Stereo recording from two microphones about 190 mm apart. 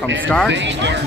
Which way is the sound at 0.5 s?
70° right (ahead or behind).